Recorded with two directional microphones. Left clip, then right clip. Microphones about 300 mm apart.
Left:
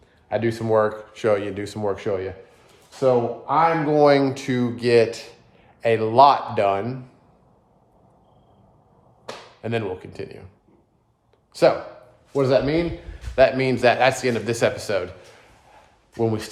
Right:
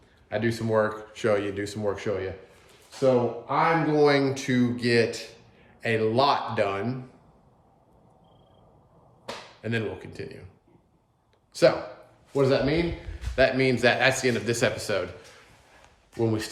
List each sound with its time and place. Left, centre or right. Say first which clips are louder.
0.3 s speech: left 5 dB; centre
9.6 s speech: left 5 dB; centre
11.5 s speech: left 3 dB; centre
16.1 s speech: left 3 dB; centre